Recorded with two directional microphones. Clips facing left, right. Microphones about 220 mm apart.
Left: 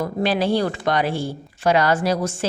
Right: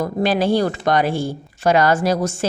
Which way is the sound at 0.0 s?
45° right (ahead or behind).